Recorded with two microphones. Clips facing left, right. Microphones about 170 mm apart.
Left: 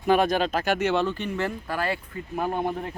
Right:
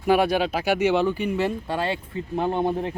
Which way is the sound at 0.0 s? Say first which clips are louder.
Right 1 dB; 10° right (ahead or behind).